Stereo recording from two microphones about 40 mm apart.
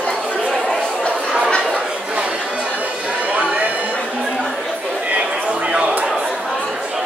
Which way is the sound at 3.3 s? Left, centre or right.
Right.